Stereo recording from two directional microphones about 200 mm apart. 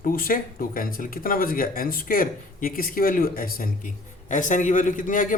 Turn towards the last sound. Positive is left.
turn(degrees=40)  # may be behind; listen again after turning